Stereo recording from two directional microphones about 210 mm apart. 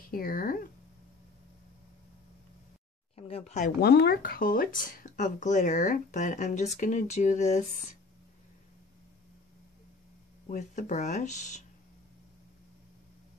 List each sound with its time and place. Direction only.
0.1 s speech: 45° left (ahead or behind)
3.2 s speech: 30° left (ahead or behind)
3.5 s speech: 45° left (ahead or behind)
10.5 s speech: 35° left (ahead or behind)